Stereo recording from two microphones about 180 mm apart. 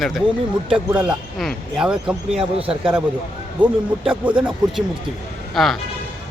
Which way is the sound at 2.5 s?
30° right (ahead or behind).